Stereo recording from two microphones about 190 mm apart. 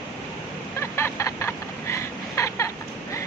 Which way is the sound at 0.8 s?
15° left (ahead or behind).